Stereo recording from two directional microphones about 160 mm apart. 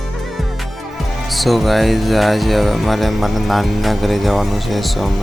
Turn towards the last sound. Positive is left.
turn(degrees=0)  # may be behind; listen again after turning